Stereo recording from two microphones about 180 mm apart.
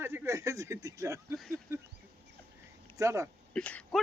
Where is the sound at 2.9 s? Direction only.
15° right (ahead or behind).